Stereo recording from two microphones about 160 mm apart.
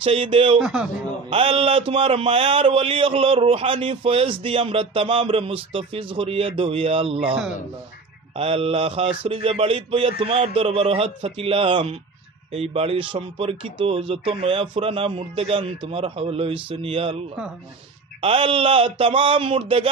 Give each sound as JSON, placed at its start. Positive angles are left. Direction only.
{"t": 0.0, "sound": "a man's voice", "side_deg": -35}
{"t": 0.6, "sound": "a man's voice", "side_deg": -5}
{"t": 1.3, "sound": "a man's voice", "side_deg": -35}
{"t": 8.4, "sound": "a man's voice", "side_deg": -40}
{"t": 18.2, "sound": "a man's voice", "side_deg": -35}